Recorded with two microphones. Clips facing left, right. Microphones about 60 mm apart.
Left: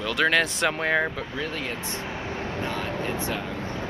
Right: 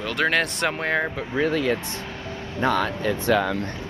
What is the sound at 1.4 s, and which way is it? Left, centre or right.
Speech, right.